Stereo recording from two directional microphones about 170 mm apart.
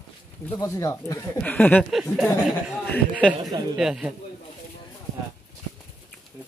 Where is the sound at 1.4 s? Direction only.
10° left (ahead or behind).